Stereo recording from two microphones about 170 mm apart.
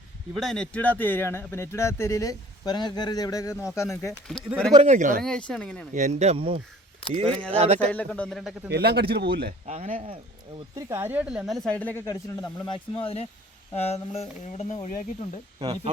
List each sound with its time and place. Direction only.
0.3 s speech: centre (ahead or behind)
4.9 s speech: 50° right (ahead or behind)
5.2 s speech: 5° left (ahead or behind)
5.9 s speech: 45° right (ahead or behind)
7.9 s speech: 5° left (ahead or behind)
8.7 s speech: 70° right (ahead or behind)
9.6 s speech: 45° right (ahead or behind)
10.8 s speech: 15° right (ahead or behind); by 15.4 s 45° left (ahead or behind)
15.6 s speech: 35° right (ahead or behind)